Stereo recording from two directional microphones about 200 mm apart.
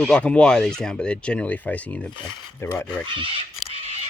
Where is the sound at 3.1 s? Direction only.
25° right (ahead or behind).